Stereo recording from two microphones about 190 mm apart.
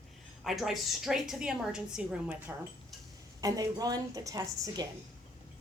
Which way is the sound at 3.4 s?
20° right (ahead or behind).